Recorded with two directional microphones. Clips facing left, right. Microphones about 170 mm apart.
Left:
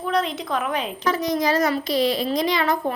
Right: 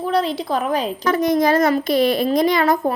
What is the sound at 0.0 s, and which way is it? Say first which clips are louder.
Speech: right 4 dB; 35° right (ahead or behind).